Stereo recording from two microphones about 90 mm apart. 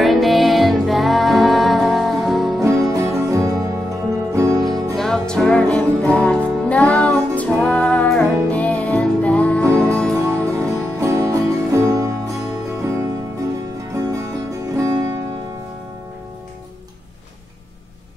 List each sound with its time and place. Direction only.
0.0 s music: centre (ahead or behind)
2.6 s music: 35° right (ahead or behind)
4.9 s music: 5° left (ahead or behind)
10.1 s music: 35° right (ahead or behind)